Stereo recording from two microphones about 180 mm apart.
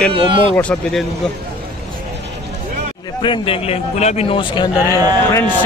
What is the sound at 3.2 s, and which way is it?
A man's voice, 30° left (ahead or behind).